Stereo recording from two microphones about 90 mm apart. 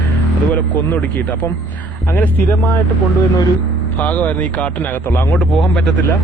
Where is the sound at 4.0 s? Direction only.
20° left (ahead or behind).